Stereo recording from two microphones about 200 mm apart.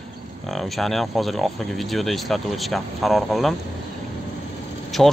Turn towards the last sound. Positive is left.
turn(degrees=0)  # may be behind; listen again after turning